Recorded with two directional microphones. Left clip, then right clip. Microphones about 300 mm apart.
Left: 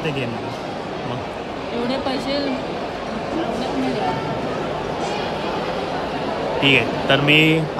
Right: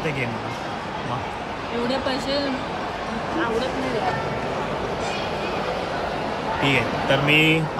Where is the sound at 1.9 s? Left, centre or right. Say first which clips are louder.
Left 1 dB; centre.